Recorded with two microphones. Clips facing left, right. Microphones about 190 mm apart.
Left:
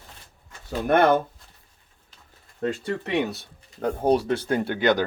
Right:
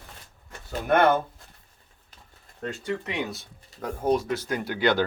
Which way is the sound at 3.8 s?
30° left (ahead or behind).